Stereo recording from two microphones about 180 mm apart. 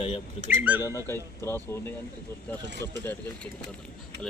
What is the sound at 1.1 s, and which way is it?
Speech, 15° left (ahead or behind).